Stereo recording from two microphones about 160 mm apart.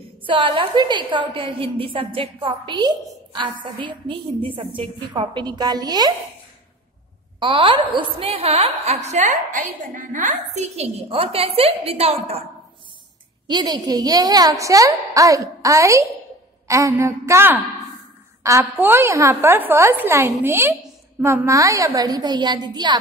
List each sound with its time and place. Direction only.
0.3 s a woman's voice: 30° right (ahead or behind)
7.3 s a woman's voice: 30° right (ahead or behind)
13.5 s a woman's voice: 25° right (ahead or behind)